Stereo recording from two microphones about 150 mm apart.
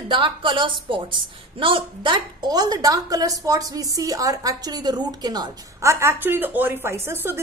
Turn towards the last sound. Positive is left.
turn(degrees=-15)  # may be behind; listen again after turning